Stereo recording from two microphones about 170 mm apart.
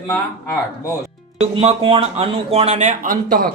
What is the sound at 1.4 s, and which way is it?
Speech, 35° right (ahead or behind).